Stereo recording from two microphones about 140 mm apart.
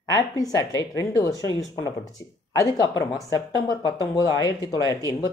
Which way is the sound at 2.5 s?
25° left (ahead or behind).